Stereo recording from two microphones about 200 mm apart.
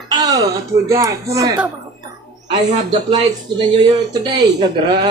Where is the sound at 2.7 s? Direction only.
20° right (ahead or behind).